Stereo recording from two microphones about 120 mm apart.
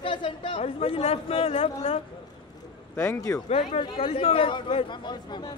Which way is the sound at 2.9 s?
25° left (ahead or behind).